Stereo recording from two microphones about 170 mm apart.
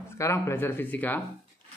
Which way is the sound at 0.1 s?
15° left (ahead or behind).